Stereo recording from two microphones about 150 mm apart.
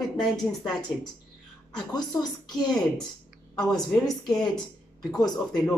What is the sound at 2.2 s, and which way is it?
Speech, 25° left (ahead or behind).